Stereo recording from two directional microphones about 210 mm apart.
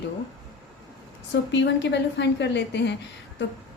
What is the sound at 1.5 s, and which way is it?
A woman's voice, 60° left (ahead or behind).